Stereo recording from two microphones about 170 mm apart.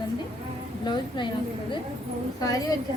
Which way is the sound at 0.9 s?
25° left (ahead or behind).